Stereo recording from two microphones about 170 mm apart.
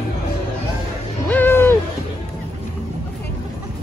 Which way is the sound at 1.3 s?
10° left (ahead or behind).